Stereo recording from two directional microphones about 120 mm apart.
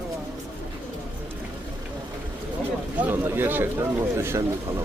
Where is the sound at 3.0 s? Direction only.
15° right (ahead or behind).